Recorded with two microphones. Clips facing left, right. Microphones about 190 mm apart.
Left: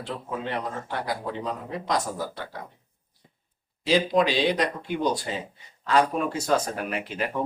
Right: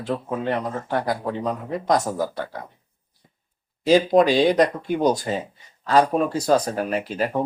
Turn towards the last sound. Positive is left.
turn(degrees=-40)  # may be behind; listen again after turning